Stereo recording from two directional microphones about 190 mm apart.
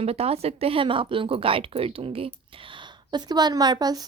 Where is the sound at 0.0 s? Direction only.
30° right (ahead or behind).